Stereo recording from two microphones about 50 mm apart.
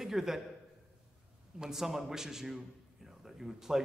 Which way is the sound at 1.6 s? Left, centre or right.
Centre.